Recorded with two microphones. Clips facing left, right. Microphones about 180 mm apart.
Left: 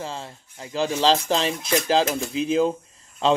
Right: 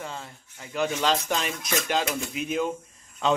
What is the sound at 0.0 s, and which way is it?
Speech, 30° left (ahead or behind).